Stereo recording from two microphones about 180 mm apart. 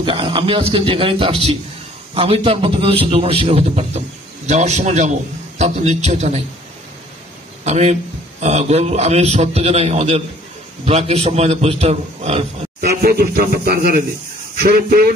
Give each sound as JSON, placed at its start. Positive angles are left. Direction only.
{"t": 0.0, "sound": "a man's voice", "side_deg": -30}
{"t": 7.6, "sound": "a man's voice", "side_deg": -40}
{"t": 12.8, "sound": "speech", "side_deg": -60}